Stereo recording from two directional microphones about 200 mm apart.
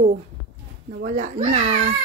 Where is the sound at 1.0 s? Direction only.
40° right (ahead or behind).